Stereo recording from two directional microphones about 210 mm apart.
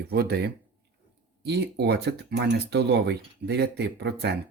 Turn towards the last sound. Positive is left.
turn(degrees=-50)  # may be behind; listen again after turning